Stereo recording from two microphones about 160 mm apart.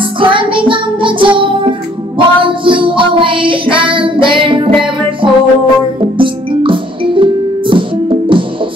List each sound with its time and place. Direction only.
0.2 s music: 30° right (ahead or behind)